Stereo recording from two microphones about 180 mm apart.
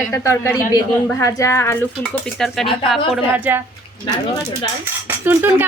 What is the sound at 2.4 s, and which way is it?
A woman's voice, centre (ahead or behind).